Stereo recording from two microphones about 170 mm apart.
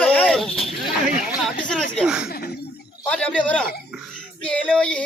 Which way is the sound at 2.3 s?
65° left (ahead or behind).